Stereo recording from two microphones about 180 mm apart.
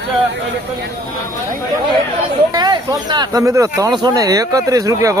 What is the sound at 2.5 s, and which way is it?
Speech, 20° right (ahead or behind).